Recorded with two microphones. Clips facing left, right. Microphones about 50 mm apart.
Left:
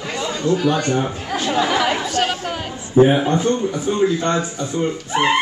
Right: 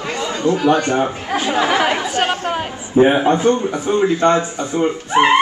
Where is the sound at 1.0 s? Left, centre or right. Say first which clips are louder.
Right 2 dB; centre.